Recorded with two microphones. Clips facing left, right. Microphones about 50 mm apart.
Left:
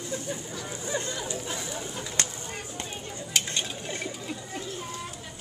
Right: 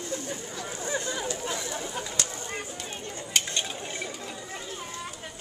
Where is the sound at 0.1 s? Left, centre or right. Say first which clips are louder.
Even; centre.